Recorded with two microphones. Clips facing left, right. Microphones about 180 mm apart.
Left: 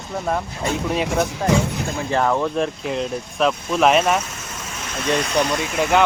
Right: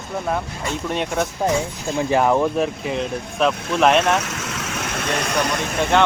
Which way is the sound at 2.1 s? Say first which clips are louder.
Right 2 dB; 15° right (ahead or behind).